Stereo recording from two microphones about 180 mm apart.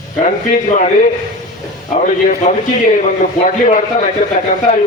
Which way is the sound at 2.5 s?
40° left (ahead or behind).